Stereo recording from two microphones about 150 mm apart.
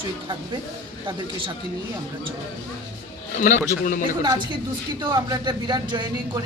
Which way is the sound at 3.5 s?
60° left (ahead or behind).